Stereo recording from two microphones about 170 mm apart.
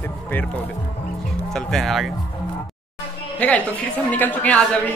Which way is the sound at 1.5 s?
Centre (ahead or behind).